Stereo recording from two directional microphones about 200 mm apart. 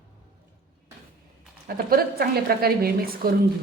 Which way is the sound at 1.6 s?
50° right (ahead or behind).